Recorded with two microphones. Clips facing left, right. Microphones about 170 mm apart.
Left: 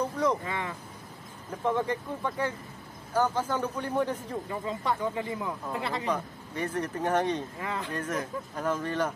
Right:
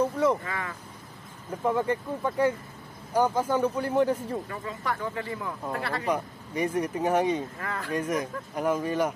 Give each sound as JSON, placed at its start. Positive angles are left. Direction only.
{"t": 0.0, "sound": "a sound", "side_deg": -5}
{"t": 0.4, "sound": "speech", "side_deg": 20}
{"t": 1.6, "sound": "speech", "side_deg": -10}
{"t": 4.5, "sound": "speech", "side_deg": 20}
{"t": 6.0, "sound": "speech", "side_deg": -10}
{"t": 7.5, "sound": "speech", "side_deg": 20}
{"t": 7.9, "sound": "speech", "side_deg": -10}